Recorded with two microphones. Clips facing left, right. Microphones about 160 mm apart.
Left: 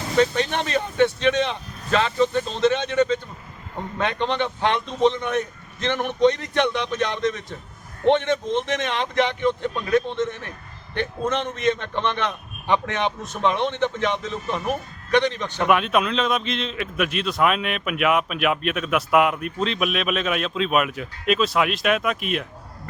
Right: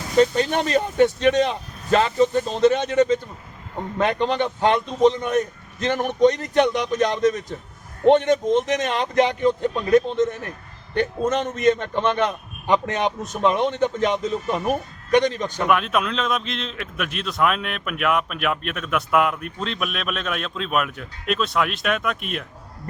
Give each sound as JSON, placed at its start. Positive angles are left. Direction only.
{"t": 0.2, "sound": "speech", "side_deg": -40}
{"t": 15.6, "sound": "a man's voice", "side_deg": 0}